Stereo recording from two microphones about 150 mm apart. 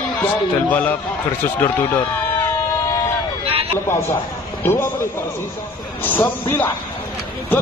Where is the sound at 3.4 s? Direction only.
40° right (ahead or behind).